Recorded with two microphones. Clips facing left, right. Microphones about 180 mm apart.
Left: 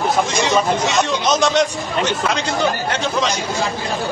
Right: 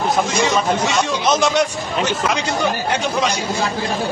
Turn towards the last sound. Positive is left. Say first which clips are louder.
# even
turn(degrees=-5)  # may be behind; listen again after turning